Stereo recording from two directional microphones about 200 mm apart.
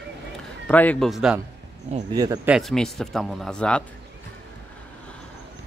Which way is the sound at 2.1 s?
20° right (ahead or behind).